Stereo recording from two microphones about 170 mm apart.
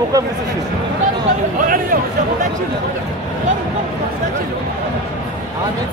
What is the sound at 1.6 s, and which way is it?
Speech, 55° right (ahead or behind).